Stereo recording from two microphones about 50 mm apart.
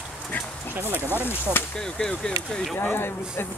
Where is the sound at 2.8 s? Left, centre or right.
Left.